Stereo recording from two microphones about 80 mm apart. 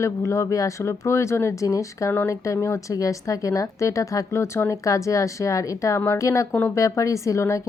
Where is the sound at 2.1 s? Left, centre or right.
Left.